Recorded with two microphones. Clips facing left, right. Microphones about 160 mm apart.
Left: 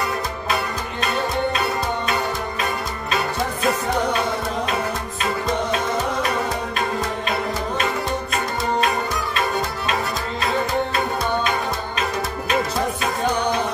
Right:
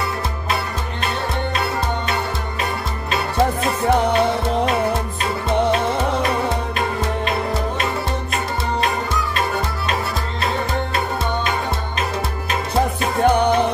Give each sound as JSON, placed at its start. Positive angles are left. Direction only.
{"t": 13.2, "sound": "music", "side_deg": -55}